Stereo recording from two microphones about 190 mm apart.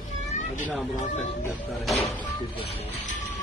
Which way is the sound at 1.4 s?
Centre (ahead or behind).